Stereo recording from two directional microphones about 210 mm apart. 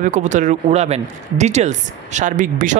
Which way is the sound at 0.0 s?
35° right (ahead or behind).